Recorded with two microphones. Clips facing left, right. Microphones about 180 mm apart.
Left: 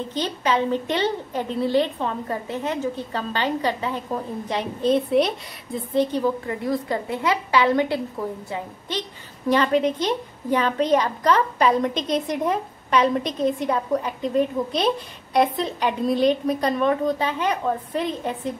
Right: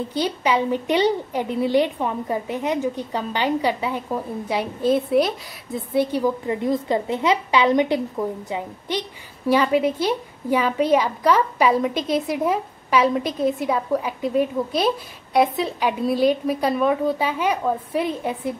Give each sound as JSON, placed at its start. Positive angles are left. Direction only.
{"t": 0.1, "sound": "a woman's voice", "side_deg": -10}